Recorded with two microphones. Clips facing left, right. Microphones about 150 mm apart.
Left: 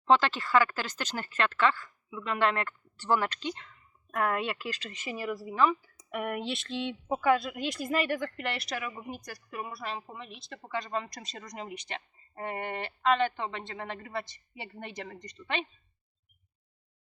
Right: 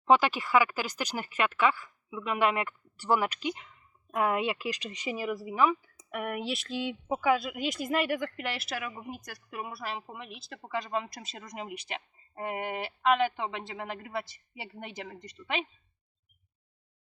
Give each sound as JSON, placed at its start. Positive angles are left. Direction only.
{"t": 0.0, "sound": "speech", "side_deg": -10}